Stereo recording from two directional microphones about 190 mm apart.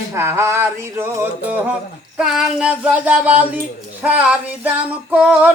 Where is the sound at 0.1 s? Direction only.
15° right (ahead or behind).